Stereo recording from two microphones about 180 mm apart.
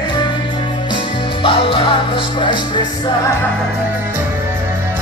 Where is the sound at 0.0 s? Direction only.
25° left (ahead or behind).